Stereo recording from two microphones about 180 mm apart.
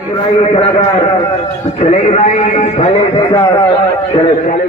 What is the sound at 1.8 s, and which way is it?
A man's voice, 35° left (ahead or behind).